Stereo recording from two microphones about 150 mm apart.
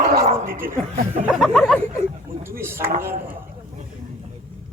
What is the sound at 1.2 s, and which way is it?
Speech, centre (ahead or behind).